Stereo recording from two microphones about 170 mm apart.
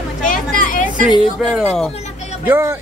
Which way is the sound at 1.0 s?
5° right (ahead or behind).